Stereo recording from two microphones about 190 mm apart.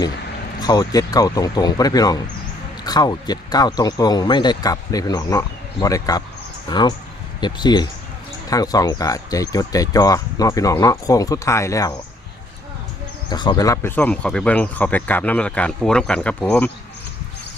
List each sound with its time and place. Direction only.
0.6 s speech: 20° left (ahead or behind)
13.3 s speech: 25° left (ahead or behind); by 16.7 s 5° left (ahead or behind)